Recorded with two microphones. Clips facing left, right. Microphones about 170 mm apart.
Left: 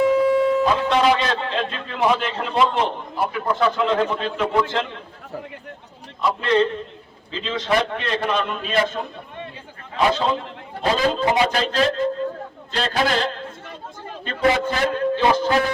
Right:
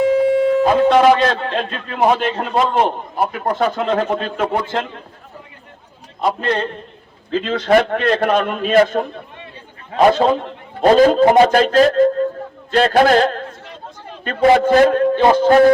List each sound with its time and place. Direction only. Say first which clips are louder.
0.6 s a man's voice: right 6 dB; 50° right (ahead or behind)
6.2 s a man's voice: even; 50° right (ahead or behind)